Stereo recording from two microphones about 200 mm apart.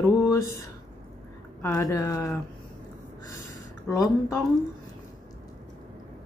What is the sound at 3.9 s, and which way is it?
Speech, 15° left (ahead or behind).